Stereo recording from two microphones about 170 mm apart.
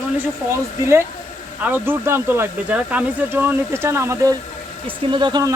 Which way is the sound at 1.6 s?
10° right (ahead or behind).